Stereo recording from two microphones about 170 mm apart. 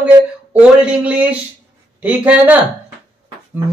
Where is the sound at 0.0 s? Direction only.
10° right (ahead or behind).